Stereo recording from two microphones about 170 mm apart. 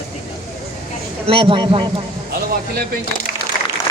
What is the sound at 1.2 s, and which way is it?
Speech, 30° right (ahead or behind).